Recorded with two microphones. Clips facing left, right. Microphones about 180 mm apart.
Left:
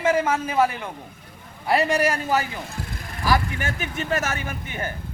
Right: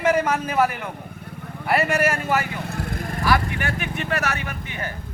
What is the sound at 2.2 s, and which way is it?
Vehicle, 65° right (ahead or behind).